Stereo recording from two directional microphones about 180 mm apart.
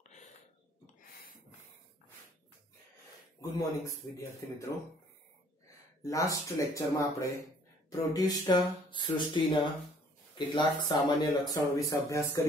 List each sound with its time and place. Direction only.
0.8 s a sound: 55° left (ahead or behind)
4.1 s speech: 15° left (ahead or behind)
6.0 s speech: 15° left (ahead or behind)